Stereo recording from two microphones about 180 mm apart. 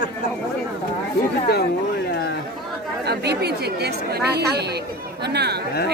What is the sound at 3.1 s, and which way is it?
A woman's voice, 65° right (ahead or behind).